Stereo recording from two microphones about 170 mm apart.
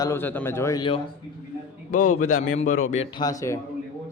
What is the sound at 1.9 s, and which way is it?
Speech, 50° left (ahead or behind).